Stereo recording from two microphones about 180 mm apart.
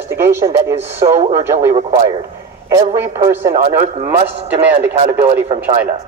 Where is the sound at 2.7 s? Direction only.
20° right (ahead or behind).